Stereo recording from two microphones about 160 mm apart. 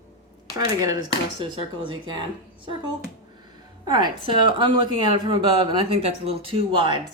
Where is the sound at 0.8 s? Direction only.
25° right (ahead or behind).